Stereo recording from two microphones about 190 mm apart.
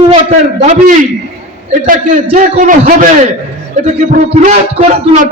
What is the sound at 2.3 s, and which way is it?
A man's voice, 40° right (ahead or behind).